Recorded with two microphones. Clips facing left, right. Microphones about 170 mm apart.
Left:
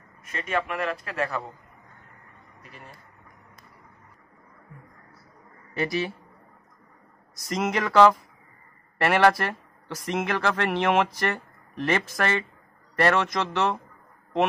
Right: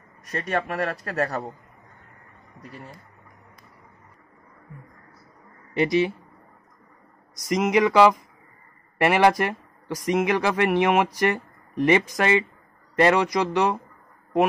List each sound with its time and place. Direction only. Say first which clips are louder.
0.2 s a man's voice: right 2 dB; 35° right (ahead or behind)
5.8 s speech: right 6 dB; 20° right (ahead or behind)
7.4 s speech: right 6 dB; centre (ahead or behind)